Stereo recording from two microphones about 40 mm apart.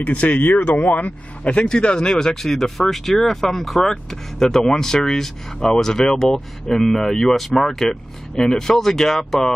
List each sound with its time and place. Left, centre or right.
0.0 s speech: left
0.4 s speech: left
1.5 s speech: left
2.4 s speech: centre